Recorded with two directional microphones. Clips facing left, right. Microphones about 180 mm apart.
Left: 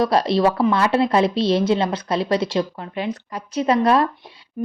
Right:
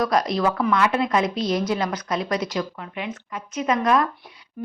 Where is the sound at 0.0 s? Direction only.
30° left (ahead or behind).